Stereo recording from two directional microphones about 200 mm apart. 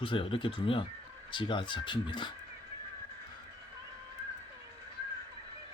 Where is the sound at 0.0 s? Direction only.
25° left (ahead or behind).